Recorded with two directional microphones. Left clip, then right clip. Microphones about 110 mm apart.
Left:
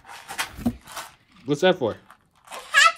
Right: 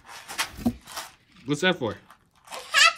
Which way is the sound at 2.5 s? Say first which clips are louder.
Left 2 dB; 25° left (ahead or behind).